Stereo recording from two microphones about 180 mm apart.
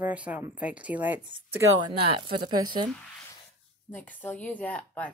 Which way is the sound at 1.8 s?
25° right (ahead or behind).